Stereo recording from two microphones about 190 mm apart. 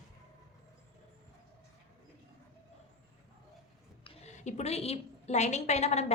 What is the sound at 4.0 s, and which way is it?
A woman's voice, 35° left (ahead or behind).